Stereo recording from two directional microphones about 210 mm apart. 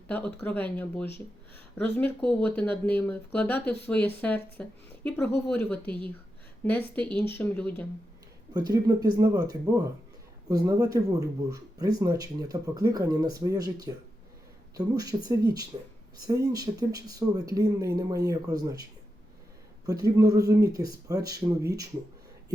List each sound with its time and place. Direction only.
0.1 s speech: 10° left (ahead or behind)
8.5 s speech: 20° right (ahead or behind)